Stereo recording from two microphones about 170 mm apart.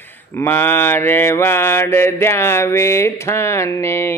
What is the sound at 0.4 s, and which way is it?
Mantra, 10° left (ahead or behind).